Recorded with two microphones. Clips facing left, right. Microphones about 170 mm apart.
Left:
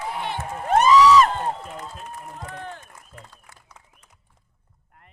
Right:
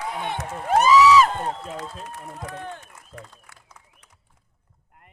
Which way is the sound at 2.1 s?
80° right.